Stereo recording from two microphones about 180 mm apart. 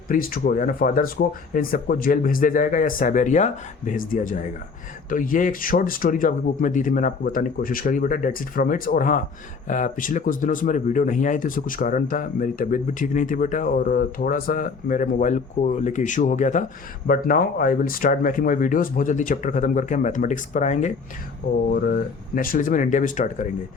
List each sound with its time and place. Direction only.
0.1 s speech: 55° left (ahead or behind)
21.7 s speech: 55° left (ahead or behind)